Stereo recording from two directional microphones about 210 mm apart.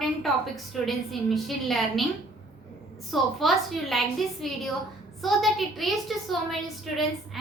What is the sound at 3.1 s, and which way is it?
A woman's voice, centre (ahead or behind).